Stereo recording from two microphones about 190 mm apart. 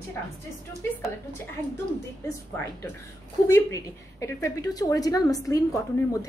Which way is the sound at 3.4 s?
15° left (ahead or behind).